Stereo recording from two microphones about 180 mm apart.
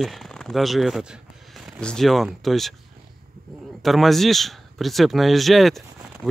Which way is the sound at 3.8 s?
Centre (ahead or behind).